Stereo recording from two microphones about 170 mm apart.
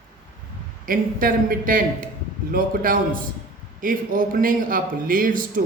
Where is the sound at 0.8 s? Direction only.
55° right (ahead or behind).